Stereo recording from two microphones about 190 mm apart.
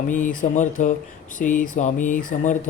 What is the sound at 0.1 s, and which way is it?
Speech, 40° left (ahead or behind).